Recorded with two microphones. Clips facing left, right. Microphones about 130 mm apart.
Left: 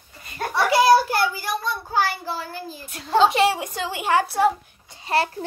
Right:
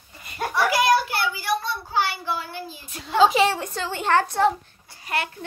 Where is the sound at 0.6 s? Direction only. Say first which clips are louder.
Left 5 dB; 30° left (ahead or behind).